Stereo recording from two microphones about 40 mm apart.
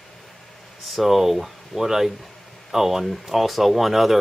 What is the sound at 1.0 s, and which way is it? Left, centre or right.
Speech, centre.